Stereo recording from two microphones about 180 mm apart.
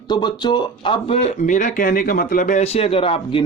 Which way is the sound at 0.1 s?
25° left (ahead or behind).